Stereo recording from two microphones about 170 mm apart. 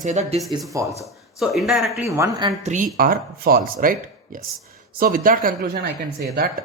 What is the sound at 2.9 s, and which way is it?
Speech, 60° right (ahead or behind).